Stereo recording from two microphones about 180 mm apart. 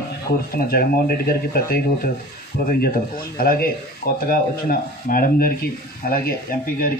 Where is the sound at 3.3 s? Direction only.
55° left (ahead or behind).